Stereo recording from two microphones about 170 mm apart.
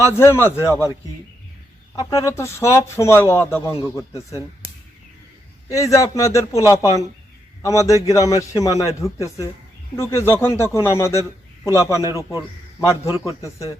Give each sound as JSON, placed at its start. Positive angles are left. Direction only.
{"t": 0.0, "sound": "a man's voice", "side_deg": 15}
{"t": 2.0, "sound": "a man's voice", "side_deg": 20}
{"t": 5.7, "sound": "a man's voice", "side_deg": 20}